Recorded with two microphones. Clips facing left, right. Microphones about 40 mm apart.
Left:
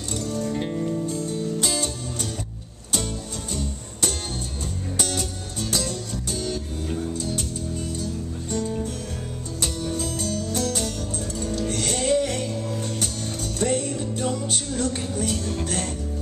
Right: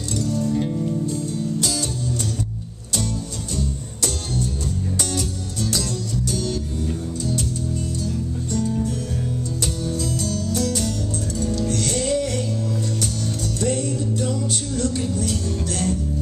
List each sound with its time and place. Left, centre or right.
0.2 s music: left
0.6 s music: left
1.1 s music: left
5.1 s music: left
8.5 s music: left
13.6 s music: left